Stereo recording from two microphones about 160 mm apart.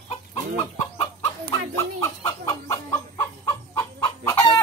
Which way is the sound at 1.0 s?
35° left (ahead or behind).